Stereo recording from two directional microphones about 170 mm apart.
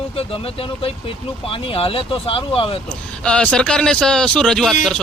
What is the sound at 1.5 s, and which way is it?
Speech, 30° left (ahead or behind).